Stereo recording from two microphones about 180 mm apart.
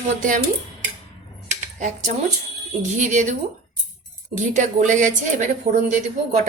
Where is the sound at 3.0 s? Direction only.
45° right (ahead or behind).